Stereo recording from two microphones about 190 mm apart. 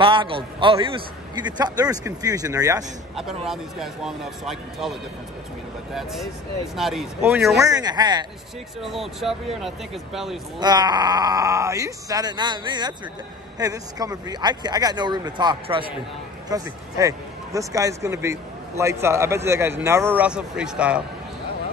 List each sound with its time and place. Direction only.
0.0 s a man's voice: 25° right (ahead or behind)
3.4 s speech: centre (ahead or behind)
6.7 s speech: centre (ahead or behind)
7.6 s a man's voice: 20° right (ahead or behind)
8.8 s speech: centre (ahead or behind)
10.6 s a man's voice: 20° right (ahead or behind); by 21.0 s 5° right (ahead or behind)